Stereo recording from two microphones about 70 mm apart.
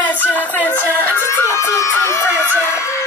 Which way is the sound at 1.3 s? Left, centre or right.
Left.